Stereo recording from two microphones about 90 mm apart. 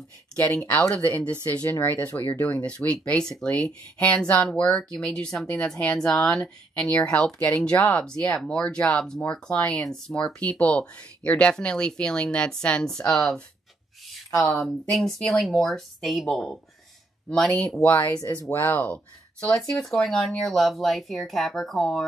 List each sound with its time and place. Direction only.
0.6 s speech: 20° left (ahead or behind)
14.3 s speech: 35° left (ahead or behind)
14.6 s speech: centre (ahead or behind)
17.8 s speech: 20° left (ahead or behind)
18.1 s speech: 40° left (ahead or behind)
18.5 s speech: 25° left (ahead or behind)
19.4 s speech: 10° left (ahead or behind)